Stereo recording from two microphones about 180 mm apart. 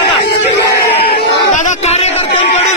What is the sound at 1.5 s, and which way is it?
A man's voice, 40° left (ahead or behind).